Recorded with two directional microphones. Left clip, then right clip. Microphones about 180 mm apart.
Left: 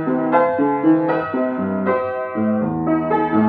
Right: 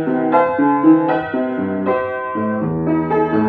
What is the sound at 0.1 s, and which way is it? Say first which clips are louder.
Music: right 1 dB; 15° right (ahead or behind).